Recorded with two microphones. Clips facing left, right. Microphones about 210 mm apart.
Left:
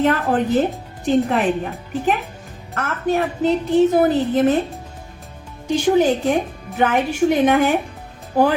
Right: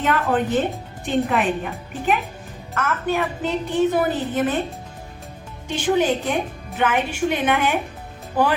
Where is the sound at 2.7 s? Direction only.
35° left (ahead or behind).